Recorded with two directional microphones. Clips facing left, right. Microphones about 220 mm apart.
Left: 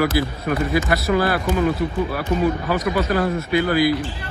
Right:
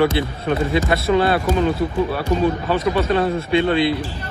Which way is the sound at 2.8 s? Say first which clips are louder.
Right 2 dB; 30° right (ahead or behind).